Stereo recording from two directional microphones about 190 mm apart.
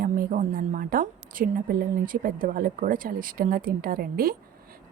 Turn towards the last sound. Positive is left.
turn(degrees=-50)  # may be behind; listen again after turning